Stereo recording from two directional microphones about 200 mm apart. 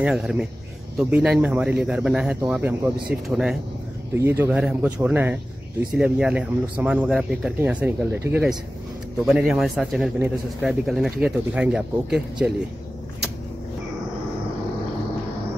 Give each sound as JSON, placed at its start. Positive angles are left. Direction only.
{"t": 0.0, "sound": "speech", "side_deg": -5}